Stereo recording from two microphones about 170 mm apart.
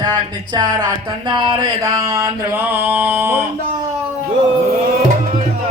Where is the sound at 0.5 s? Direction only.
25° right (ahead or behind).